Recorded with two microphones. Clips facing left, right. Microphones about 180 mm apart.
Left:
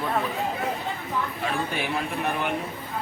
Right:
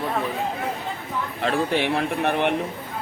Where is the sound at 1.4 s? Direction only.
70° right (ahead or behind).